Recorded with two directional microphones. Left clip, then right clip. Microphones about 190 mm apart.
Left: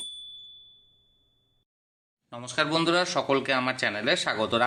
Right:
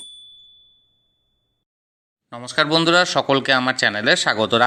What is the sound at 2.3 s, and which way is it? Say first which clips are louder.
Speech: right 8 dB; 30° right (ahead or behind).